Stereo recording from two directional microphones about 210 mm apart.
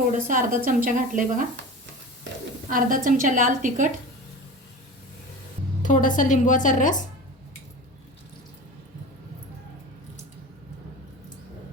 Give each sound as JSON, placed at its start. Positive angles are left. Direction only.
{"t": 0.3, "sound": "a woman's voice", "side_deg": -40}
{"t": 2.6, "sound": "a woman's voice", "side_deg": -40}
{"t": 5.8, "sound": "a woman's voice", "side_deg": 40}